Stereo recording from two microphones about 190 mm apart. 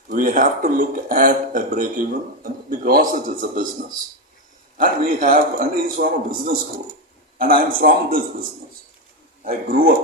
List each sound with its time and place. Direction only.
0.1 s speech: 45° right (ahead or behind)
4.8 s speech: 45° right (ahead or behind)